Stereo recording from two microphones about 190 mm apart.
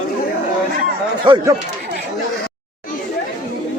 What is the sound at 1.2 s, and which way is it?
Speech, 25° right (ahead or behind).